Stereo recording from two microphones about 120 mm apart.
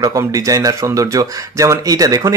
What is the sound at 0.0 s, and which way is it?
Speech, 25° right (ahead or behind).